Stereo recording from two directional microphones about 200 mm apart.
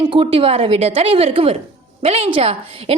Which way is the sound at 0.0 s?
25° right (ahead or behind).